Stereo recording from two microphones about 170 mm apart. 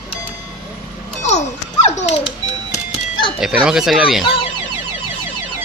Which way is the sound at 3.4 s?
5° right (ahead or behind).